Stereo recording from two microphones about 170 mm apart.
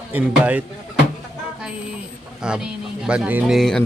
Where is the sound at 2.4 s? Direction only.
5° right (ahead or behind).